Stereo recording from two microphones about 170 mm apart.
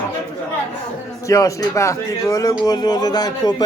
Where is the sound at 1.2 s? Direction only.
20° left (ahead or behind).